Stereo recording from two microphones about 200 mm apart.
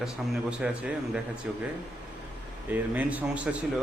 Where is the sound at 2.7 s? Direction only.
10° right (ahead or behind).